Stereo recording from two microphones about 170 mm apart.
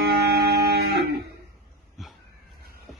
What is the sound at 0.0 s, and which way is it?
Guitar, 70° right (ahead or behind).